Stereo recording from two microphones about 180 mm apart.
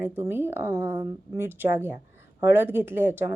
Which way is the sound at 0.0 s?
15° right (ahead or behind).